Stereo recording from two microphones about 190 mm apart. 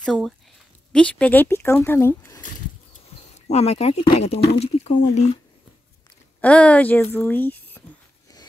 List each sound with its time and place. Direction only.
0.0 s speech: centre (ahead or behind)
2.4 s speech: 40° left (ahead or behind)
6.4 s speech: 5° left (ahead or behind)